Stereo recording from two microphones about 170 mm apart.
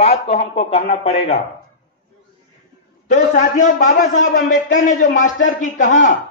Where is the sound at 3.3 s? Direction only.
45° left (ahead or behind).